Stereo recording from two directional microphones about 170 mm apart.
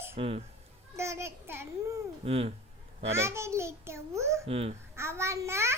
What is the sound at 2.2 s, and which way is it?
Speech, 35° right (ahead or behind).